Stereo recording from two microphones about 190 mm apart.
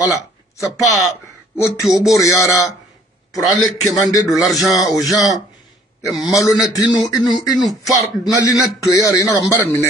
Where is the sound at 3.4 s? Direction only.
Centre (ahead or behind).